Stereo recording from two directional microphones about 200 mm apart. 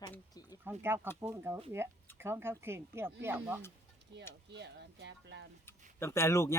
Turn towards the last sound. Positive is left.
turn(degrees=15)  # may be behind; listen again after turning